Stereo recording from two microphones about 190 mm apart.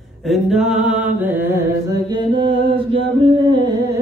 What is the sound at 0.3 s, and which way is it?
Mantra, centre (ahead or behind).